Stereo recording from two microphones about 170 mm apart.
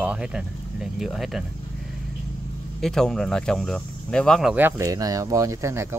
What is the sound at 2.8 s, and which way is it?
Speech, centre (ahead or behind).